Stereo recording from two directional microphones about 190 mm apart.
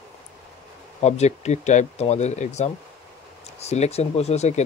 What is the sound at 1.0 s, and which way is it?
Speech, 35° left (ahead or behind).